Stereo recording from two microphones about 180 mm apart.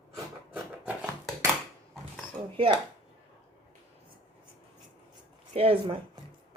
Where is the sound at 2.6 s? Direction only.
30° right (ahead or behind).